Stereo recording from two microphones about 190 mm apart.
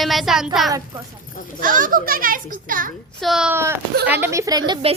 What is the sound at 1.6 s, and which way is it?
A child's voice, 45° right (ahead or behind).